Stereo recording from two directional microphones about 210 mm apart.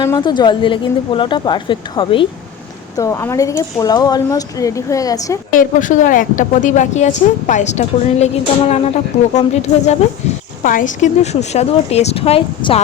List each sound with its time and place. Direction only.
0.0 s a woman's voice: 20° left (ahead or behind)
5.5 s a woman's voice: 40° left (ahead or behind)